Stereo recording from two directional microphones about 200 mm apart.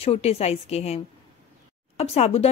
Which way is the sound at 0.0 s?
30° left (ahead or behind).